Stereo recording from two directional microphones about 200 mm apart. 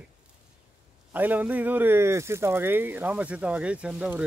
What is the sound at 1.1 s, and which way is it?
Speech, 10° right (ahead or behind).